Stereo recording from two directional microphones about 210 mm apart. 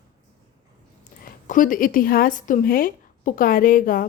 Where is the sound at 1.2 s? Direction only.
40° left (ahead or behind).